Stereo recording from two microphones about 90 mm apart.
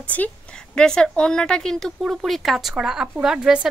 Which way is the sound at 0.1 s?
20° left (ahead or behind).